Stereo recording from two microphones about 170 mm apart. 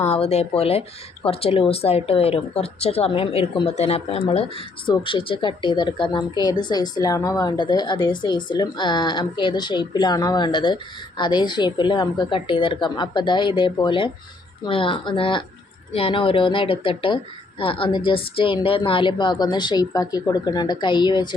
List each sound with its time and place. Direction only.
0.3 s a woman's voice: 35° left (ahead or behind)